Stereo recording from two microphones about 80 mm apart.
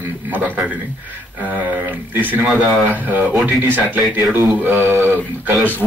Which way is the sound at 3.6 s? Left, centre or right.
Right.